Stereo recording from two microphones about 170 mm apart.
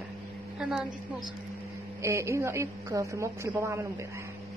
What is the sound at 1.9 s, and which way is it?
A woman's voice, 15° right (ahead or behind).